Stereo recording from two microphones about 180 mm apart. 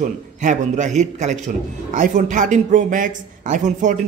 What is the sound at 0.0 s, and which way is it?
Speech, 45° right (ahead or behind).